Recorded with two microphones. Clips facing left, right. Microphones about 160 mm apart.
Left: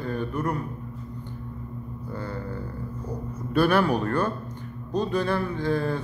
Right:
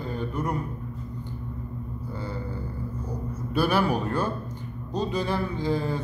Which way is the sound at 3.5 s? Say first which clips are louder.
Left 3 dB; 5° right (ahead or behind).